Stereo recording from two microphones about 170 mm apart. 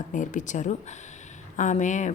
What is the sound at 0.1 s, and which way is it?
A woman's voice, 50° left (ahead or behind).